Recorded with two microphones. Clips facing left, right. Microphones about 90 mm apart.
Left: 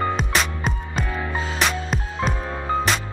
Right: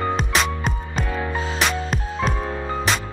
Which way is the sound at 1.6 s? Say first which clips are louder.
Even; centre (ahead or behind).